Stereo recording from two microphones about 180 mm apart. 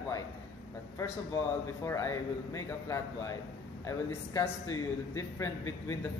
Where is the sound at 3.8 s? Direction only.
15° left (ahead or behind).